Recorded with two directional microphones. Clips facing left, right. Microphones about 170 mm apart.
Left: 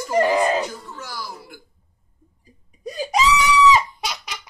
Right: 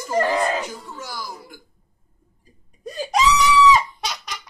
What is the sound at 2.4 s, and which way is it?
Laughter, centre (ahead or behind).